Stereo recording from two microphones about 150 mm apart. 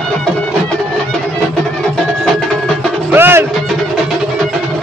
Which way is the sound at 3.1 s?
15° right (ahead or behind).